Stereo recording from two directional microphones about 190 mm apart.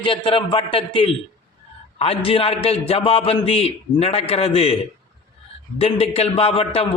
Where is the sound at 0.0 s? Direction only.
30° left (ahead or behind).